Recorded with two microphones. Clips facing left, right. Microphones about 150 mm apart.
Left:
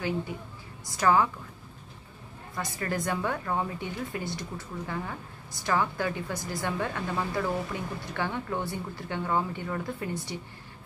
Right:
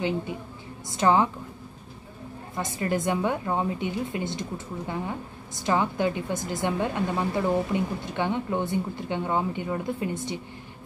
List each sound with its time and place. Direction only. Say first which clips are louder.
0.8 s a woman's voice: right 2 dB; 25° right (ahead or behind)
2.5 s a woman's voice: right 5 dB; 20° right (ahead or behind)